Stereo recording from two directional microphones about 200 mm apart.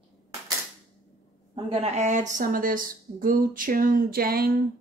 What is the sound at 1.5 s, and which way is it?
A woman's voice, 30° right (ahead or behind).